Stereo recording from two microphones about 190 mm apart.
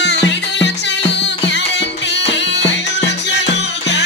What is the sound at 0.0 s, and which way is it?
Music, 65° left (ahead or behind).